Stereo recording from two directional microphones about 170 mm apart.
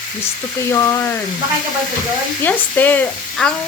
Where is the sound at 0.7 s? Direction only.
15° left (ahead or behind).